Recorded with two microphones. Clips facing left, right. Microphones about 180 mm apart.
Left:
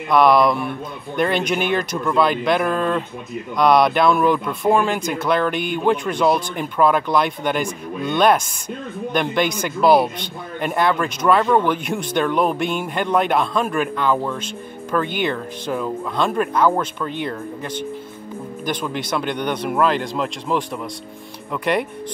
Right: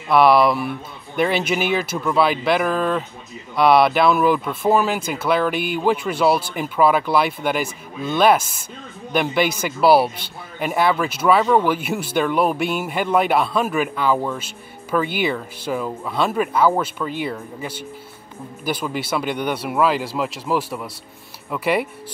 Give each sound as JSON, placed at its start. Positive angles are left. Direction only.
{"t": 0.1, "sound": "speech", "side_deg": -5}